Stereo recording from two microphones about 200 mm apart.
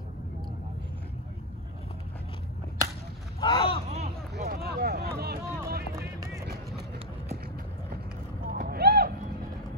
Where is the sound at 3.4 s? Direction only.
25° left (ahead or behind).